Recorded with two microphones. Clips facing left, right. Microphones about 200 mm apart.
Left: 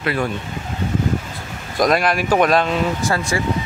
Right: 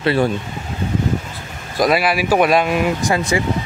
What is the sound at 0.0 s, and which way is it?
Speech, 30° right (ahead or behind).